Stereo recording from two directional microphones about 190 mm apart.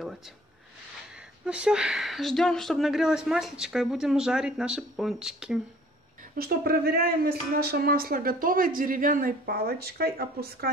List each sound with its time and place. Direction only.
1.4 s speech: 5° right (ahead or behind)
6.3 s speech: 50° right (ahead or behind)